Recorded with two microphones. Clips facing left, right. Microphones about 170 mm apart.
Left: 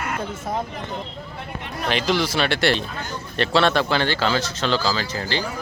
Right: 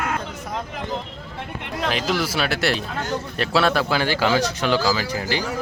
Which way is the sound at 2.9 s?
80° right.